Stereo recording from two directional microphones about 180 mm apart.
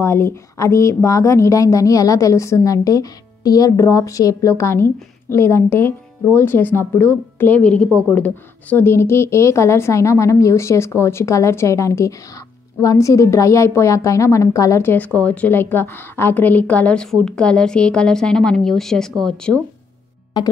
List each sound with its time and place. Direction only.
0.0 s a woman's voice: 15° left (ahead or behind)